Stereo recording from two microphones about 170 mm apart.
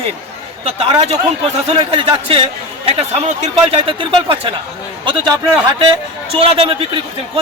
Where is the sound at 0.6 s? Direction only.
35° right (ahead or behind).